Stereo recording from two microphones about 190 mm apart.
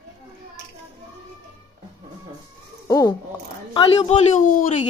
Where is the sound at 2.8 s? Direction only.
15° left (ahead or behind).